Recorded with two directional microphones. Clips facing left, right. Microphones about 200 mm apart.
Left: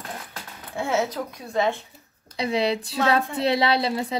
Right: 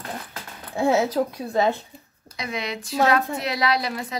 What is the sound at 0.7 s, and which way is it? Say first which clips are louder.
A woman's voice: right 5 dB; 35° right (ahead or behind).